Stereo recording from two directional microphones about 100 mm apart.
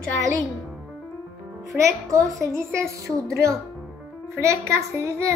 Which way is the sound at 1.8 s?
30° right (ahead or behind).